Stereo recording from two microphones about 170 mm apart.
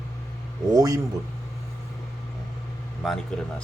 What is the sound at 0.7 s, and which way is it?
Speech, 20° right (ahead or behind).